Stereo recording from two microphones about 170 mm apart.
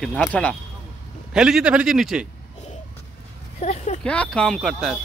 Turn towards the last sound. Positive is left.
turn(degrees=0)  # may be behind; listen again after turning